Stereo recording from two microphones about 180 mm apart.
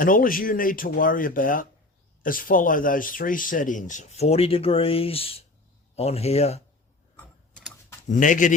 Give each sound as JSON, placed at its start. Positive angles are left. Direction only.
{"t": 0.0, "sound": "speech", "side_deg": 50}
{"t": 7.2, "sound": "a sound", "side_deg": 10}
{"t": 8.1, "sound": "speech", "side_deg": 45}